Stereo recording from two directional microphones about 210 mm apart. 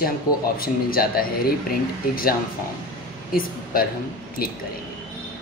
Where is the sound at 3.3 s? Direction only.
45° left (ahead or behind).